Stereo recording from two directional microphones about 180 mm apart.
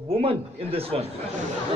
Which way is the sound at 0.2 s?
30° right (ahead or behind).